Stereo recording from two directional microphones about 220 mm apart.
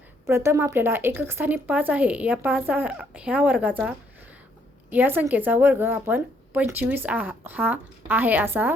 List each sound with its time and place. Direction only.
0.3 s speech: 10° right (ahead or behind)